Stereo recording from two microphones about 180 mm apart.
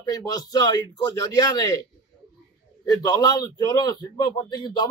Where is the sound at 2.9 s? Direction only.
20° left (ahead or behind).